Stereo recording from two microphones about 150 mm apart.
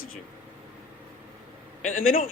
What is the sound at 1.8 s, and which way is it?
Speech, 65° left (ahead or behind).